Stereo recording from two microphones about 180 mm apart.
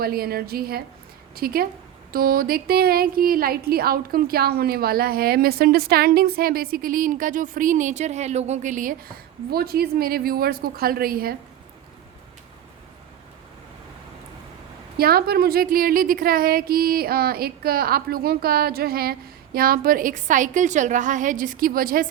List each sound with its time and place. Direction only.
0.0 s speech: 60° right (ahead or behind)
9.5 s speech: 60° right (ahead or behind)
14.9 s a woman's voice: 60° right (ahead or behind)